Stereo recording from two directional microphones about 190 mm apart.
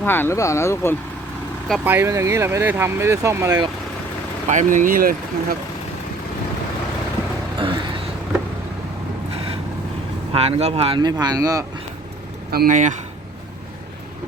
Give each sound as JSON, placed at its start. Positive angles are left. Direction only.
{"t": 0.0, "sound": "speech", "side_deg": 10}
{"t": 1.8, "sound": "speech", "side_deg": -10}
{"t": 4.4, "sound": "speech", "side_deg": -40}
{"t": 7.6, "sound": "speech", "side_deg": -25}
{"t": 10.3, "sound": "speech", "side_deg": -30}
{"t": 12.5, "sound": "speech", "side_deg": -50}